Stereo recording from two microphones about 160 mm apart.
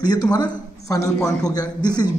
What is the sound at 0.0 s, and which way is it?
A man's voice, 25° left (ahead or behind).